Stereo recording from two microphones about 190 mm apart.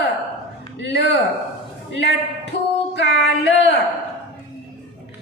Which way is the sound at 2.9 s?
65° left (ahead or behind).